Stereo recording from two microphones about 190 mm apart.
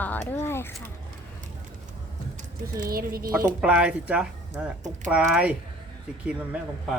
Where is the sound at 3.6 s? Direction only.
5° right (ahead or behind).